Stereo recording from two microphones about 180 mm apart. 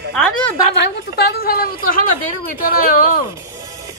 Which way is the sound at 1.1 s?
55° left (ahead or behind).